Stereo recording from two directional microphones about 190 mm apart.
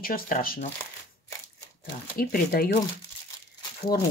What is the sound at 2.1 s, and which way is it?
Speech, 50° left (ahead or behind).